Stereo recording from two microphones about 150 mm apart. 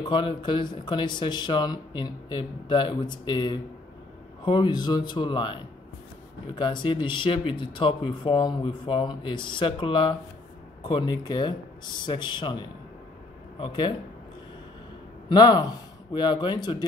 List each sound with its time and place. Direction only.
0.1 s speech: 30° left (ahead or behind)
15.2 s speech: 30° left (ahead or behind)